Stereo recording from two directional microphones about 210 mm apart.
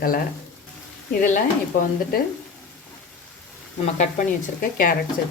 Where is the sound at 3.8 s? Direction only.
35° left (ahead or behind).